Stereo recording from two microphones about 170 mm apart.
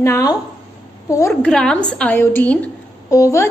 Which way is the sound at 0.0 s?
20° left (ahead or behind).